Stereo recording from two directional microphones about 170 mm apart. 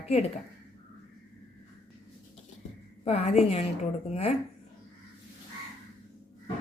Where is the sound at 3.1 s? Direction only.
40° left (ahead or behind).